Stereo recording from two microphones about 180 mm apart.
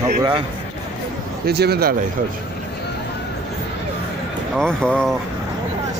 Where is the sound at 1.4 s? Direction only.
65° right (ahead or behind).